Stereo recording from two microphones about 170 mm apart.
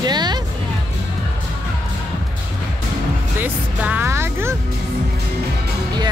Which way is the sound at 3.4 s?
10° right (ahead or behind).